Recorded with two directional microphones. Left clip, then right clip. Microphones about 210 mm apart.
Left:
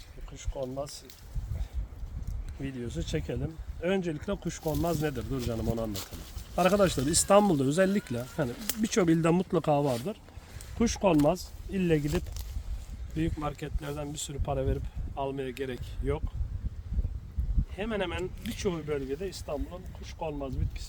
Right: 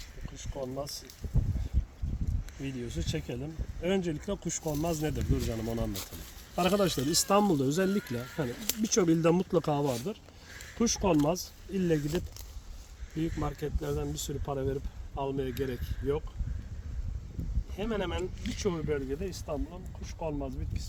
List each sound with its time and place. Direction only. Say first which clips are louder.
0.5 s speech: left 2 dB; centre (ahead or behind)
2.6 s speech: left 1 dB; 5° right (ahead or behind)
6.6 s speech: left 3 dB; 5° left (ahead or behind)
13.4 s speech: right 1 dB; 15° left (ahead or behind)
17.7 s speech: left 1 dB; 10° left (ahead or behind)